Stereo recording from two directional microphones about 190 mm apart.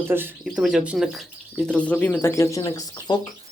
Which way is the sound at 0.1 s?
10° right (ahead or behind).